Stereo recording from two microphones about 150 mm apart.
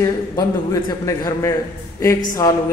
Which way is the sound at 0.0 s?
25° left (ahead or behind).